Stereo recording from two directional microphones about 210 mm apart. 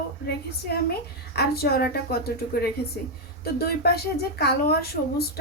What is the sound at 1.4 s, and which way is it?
Speech, 50° left (ahead or behind).